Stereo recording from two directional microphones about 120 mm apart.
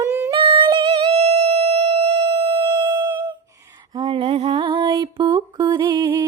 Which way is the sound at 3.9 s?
45° right (ahead or behind).